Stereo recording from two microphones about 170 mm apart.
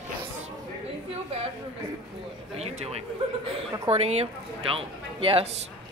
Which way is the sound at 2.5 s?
40° right (ahead or behind).